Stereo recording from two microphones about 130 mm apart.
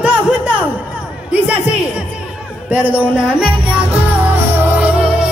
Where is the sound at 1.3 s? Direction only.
10° right (ahead or behind).